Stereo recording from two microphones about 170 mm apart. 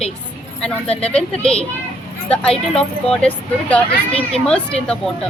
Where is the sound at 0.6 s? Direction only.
5° left (ahead or behind).